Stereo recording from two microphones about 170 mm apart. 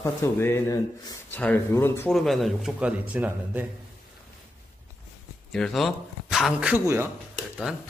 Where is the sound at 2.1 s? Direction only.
Centre (ahead or behind).